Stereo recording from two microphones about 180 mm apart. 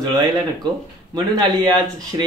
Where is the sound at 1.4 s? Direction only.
25° right (ahead or behind).